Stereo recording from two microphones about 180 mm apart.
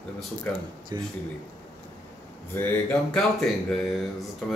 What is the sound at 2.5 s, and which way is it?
Speech, 5° left (ahead or behind).